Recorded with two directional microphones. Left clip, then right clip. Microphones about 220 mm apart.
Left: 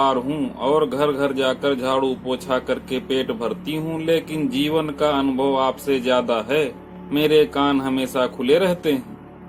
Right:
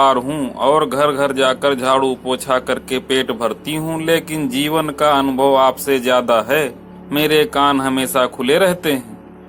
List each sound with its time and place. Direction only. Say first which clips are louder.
0.0 s speech: right 6 dB; 15° right (ahead or behind)